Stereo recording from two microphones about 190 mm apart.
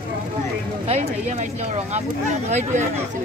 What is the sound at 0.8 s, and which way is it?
Speech, 35° right (ahead or behind).